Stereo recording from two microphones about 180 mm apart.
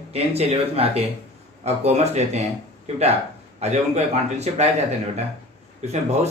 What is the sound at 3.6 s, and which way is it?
Speech, 40° right (ahead or behind).